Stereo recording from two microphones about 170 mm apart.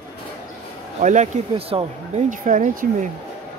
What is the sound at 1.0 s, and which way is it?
Speech, 45° right (ahead or behind).